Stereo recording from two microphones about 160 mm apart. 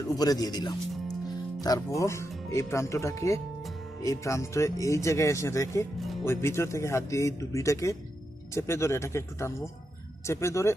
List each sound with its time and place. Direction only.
0.2 s speech: 25° left (ahead or behind)